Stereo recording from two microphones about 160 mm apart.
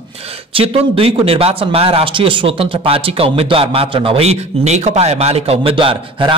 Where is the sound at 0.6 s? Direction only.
35° right (ahead or behind).